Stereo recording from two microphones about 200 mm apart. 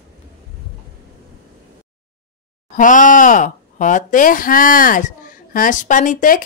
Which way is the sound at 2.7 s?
40° left (ahead or behind).